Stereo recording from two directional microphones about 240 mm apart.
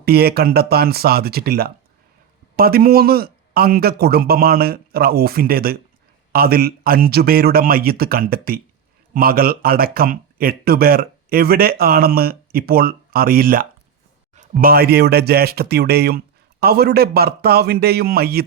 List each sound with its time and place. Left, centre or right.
0.0 s speech: right